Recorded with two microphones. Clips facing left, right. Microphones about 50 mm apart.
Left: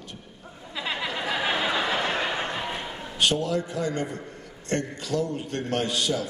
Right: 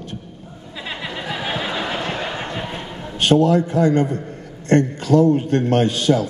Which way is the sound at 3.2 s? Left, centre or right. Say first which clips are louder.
Right 10 dB; right.